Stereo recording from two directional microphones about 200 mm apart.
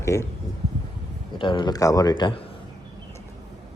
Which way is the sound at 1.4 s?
25° left (ahead or behind).